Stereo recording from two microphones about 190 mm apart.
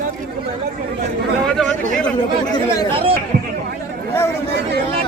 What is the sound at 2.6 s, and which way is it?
Speech, 30° right (ahead or behind).